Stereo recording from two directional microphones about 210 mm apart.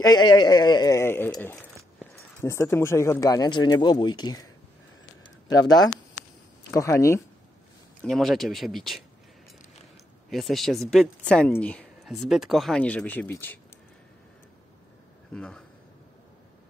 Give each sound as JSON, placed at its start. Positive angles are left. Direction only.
{"t": 0.0, "sound": "speech", "side_deg": 20}
{"t": 5.2, "sound": "a sound", "side_deg": 20}
{"t": 6.7, "sound": "speech", "side_deg": 15}
{"t": 8.0, "sound": "speech", "side_deg": 0}
{"t": 10.3, "sound": "speech", "side_deg": 0}
{"t": 15.3, "sound": "speech", "side_deg": 5}